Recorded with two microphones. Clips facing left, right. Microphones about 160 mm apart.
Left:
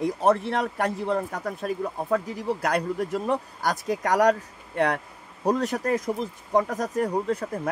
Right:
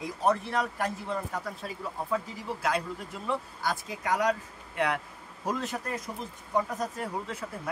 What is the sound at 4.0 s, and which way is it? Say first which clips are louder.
Speech: left 7 dB; 75° left (ahead or behind).